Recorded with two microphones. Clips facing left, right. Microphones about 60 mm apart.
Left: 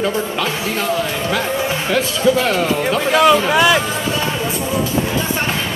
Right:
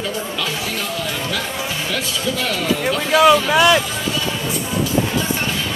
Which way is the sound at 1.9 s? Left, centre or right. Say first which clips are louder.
Left 10 dB; left.